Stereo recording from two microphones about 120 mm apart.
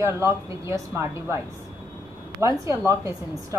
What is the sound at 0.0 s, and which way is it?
Speech, 25° right (ahead or behind).